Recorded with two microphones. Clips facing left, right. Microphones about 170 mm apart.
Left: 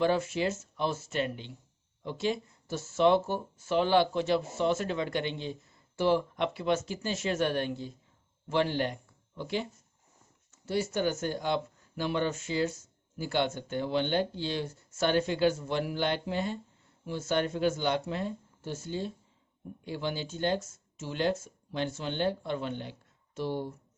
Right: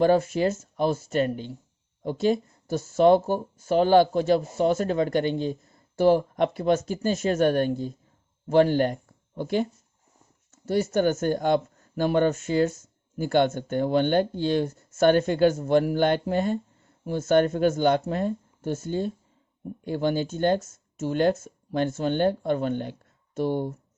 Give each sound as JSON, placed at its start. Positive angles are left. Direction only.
{"t": 0.0, "sound": "speech", "side_deg": -40}